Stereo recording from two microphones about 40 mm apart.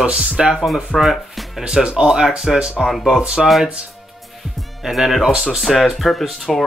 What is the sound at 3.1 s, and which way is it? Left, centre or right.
Speech, centre.